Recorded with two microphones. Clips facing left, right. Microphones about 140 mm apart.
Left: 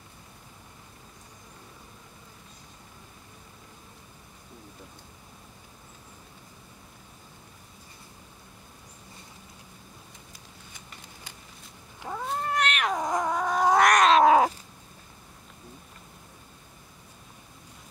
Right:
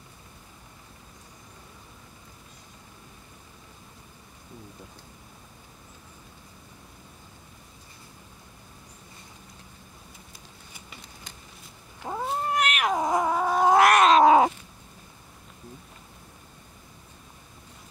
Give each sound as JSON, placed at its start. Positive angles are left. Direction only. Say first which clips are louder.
{"t": 12.0, "sound": "cat", "louder": "right 3 dB", "side_deg": -20}
{"t": 12.4, "sound": "cat", "louder": "right 1 dB", "side_deg": -10}